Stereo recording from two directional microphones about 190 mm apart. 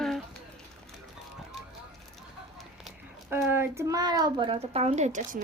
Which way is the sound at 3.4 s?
10° right (ahead or behind).